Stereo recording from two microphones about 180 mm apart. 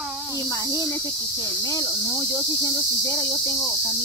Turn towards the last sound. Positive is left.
turn(degrees=15)  # may be behind; listen again after turning